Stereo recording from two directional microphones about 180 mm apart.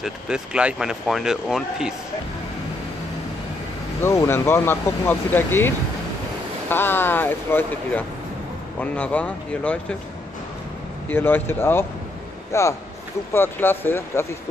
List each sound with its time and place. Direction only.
0.0 s speech: 5° right (ahead or behind)
4.0 s speech: 15° left (ahead or behind)
6.7 s speech: 10° left (ahead or behind)
11.1 s speech: 10° left (ahead or behind)